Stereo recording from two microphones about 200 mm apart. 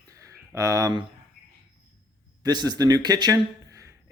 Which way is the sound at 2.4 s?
20° right (ahead or behind).